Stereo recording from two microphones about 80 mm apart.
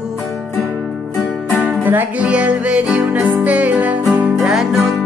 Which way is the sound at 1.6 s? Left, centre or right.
Right.